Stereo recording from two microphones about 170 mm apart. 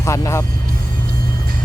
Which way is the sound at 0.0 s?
15° left (ahead or behind).